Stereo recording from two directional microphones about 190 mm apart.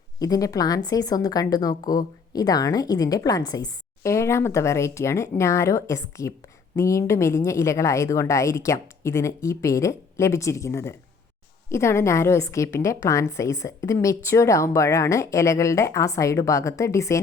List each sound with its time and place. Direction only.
0.2 s a woman's voice: 20° left (ahead or behind)